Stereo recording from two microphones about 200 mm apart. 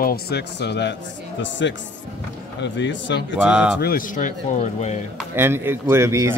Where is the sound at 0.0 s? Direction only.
50° left (ahead or behind).